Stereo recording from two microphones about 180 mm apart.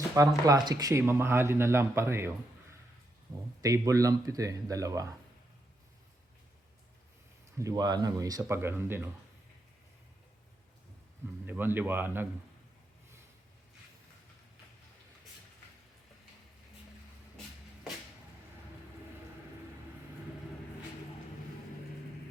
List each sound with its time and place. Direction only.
0.1 s speech: 20° right (ahead or behind)
3.6 s speech: 20° right (ahead or behind)
7.6 s speech: 20° right (ahead or behind)
11.4 s speech: 10° right (ahead or behind)